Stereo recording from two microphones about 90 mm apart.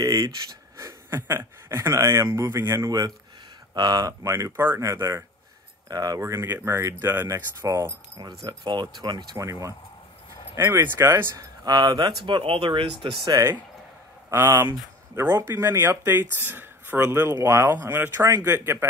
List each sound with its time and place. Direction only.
0.0 s a sound: 40° right (ahead or behind)
0.7 s speech: 30° right (ahead or behind)
5.9 s speech: 45° right (ahead or behind)
8.5 s speech: 50° right (ahead or behind)
9.4 s speech: 35° right (ahead or behind)
11.3 s speech: 50° right (ahead or behind)
12.3 s speech: 75° right (ahead or behind)
13.0 s speech: 70° right (ahead or behind)
14.3 s speech: 30° right (ahead or behind)